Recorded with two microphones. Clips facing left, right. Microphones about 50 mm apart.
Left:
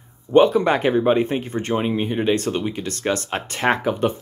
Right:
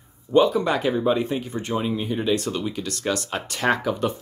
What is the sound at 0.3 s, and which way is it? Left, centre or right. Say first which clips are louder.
Speech: left 4 dB; left.